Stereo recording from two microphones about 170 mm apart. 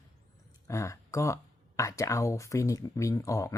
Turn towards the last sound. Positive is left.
turn(degrees=20)  # may be behind; listen again after turning